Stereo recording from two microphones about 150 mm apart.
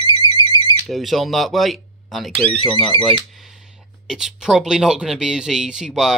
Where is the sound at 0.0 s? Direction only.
35° right (ahead or behind).